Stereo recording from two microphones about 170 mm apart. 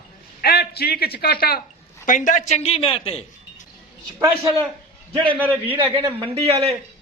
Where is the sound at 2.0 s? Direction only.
50° left (ahead or behind).